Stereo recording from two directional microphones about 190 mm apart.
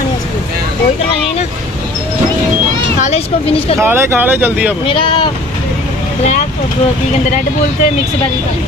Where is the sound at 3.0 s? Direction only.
35° left (ahead or behind).